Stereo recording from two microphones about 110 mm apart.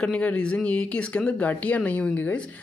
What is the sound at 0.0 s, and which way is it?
Speech, 10° left (ahead or behind).